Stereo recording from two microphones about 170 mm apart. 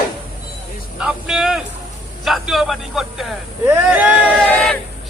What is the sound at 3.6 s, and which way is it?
Speech, 15° right (ahead or behind).